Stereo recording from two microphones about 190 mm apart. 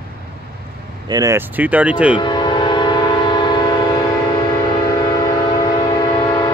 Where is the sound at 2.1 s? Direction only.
25° left (ahead or behind).